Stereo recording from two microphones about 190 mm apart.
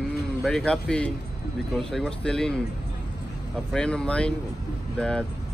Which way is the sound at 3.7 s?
5° left (ahead or behind).